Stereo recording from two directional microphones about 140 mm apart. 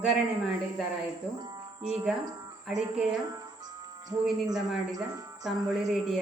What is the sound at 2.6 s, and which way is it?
Speech, 5° right (ahead or behind).